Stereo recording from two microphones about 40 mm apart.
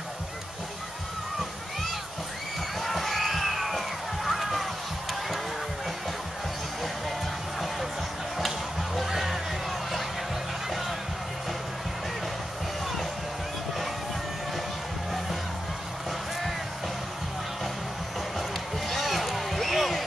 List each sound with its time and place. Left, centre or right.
2.8 s water: centre
8.4 s a sound: centre
18.9 s basketball bounce: centre